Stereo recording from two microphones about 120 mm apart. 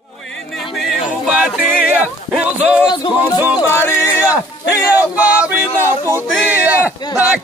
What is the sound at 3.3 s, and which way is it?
Music, 15° right (ahead or behind).